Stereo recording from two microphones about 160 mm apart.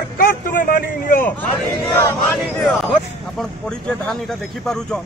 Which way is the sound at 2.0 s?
10° left (ahead or behind).